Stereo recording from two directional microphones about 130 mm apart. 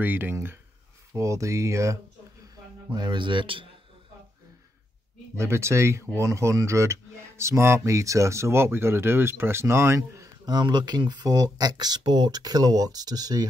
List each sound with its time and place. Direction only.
0.0 s speech: 15° right (ahead or behind)
2.9 s speech: 35° right (ahead or behind)
5.4 s speech: 20° right (ahead or behind)